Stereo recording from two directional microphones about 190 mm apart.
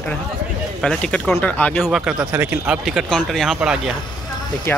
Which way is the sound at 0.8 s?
5° left (ahead or behind).